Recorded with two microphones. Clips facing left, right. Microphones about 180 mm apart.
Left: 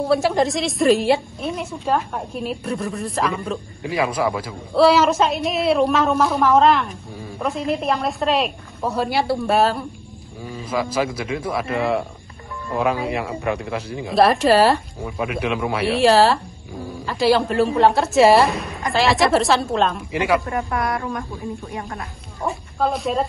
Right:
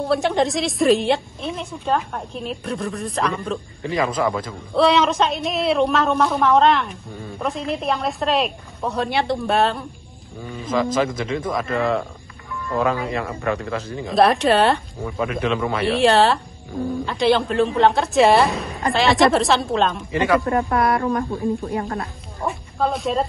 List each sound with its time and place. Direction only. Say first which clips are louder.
0.0 s a woman's voice: left 1 dB; centre (ahead or behind)
14.0 s a woman's voice: left 1 dB; centre (ahead or behind)
20.1 s a man's voice: right 1 dB; 10° left (ahead or behind)
20.4 s speech: right 4 dB; 35° right (ahead or behind)
22.4 s a woman's voice: even; centre (ahead or behind)